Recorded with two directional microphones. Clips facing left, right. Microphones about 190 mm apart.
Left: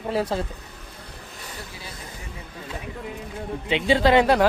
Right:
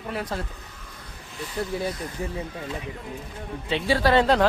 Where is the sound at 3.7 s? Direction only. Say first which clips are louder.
Left 3 dB; 20° left (ahead or behind).